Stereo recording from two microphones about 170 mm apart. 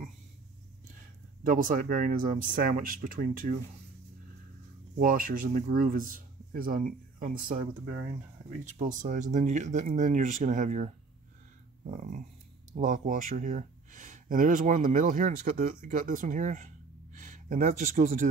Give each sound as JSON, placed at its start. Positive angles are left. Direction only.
{"t": 1.4, "sound": "a man's voice", "side_deg": -50}
{"t": 4.9, "sound": "a man's voice", "side_deg": -55}
{"t": 8.6, "sound": "a man's voice", "side_deg": -45}